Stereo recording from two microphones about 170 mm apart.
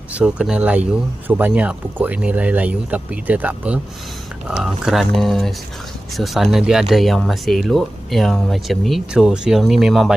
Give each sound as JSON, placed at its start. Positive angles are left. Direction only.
{"t": 0.1, "sound": "speech", "side_deg": -5}